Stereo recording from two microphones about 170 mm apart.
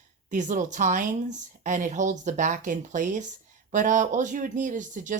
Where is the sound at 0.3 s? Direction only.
45° right (ahead or behind).